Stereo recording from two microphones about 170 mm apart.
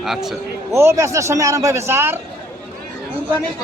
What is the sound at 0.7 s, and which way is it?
Speech, 15° right (ahead or behind).